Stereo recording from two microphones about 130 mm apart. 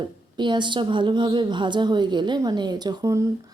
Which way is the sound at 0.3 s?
35° right (ahead or behind).